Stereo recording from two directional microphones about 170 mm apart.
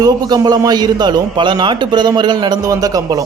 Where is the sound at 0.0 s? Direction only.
25° right (ahead or behind).